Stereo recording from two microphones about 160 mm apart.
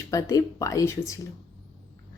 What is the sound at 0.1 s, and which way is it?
Speech, 20° left (ahead or behind).